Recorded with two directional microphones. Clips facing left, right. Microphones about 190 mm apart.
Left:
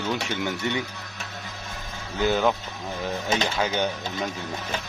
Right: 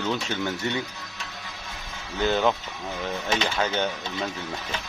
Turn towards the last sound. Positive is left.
turn(degrees=15)  # may be behind; listen again after turning